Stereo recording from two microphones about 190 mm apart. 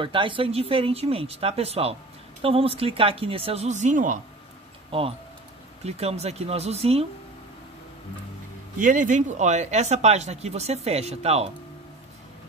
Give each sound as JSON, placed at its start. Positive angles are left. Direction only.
{"t": 0.0, "sound": "speech", "side_deg": -25}
{"t": 5.9, "sound": "speech", "side_deg": -35}
{"t": 8.7, "sound": "speech", "side_deg": -45}